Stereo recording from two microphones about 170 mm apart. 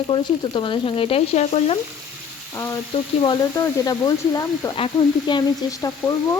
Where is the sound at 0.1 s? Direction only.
30° left (ahead or behind).